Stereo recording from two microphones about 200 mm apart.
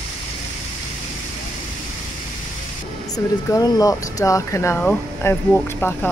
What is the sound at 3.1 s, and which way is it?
Speech, 20° left (ahead or behind).